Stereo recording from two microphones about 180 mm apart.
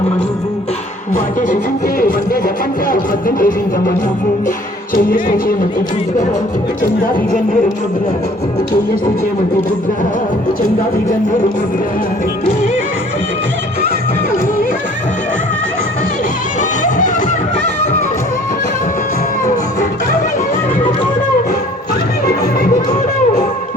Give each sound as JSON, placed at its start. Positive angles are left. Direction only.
{"t": 1.1, "sound": "music", "side_deg": 45}
{"t": 2.9, "sound": "music", "side_deg": 50}
{"t": 16.6, "sound": "music", "side_deg": 45}